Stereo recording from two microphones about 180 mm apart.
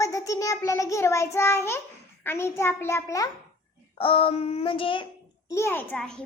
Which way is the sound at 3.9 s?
30° left (ahead or behind).